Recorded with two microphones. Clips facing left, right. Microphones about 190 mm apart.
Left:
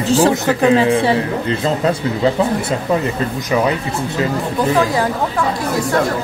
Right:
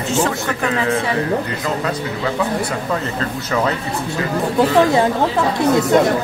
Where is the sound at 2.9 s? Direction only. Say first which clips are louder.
Left 4 dB; 15° left (ahead or behind).